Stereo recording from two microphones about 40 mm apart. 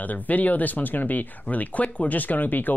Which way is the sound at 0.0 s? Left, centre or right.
Left.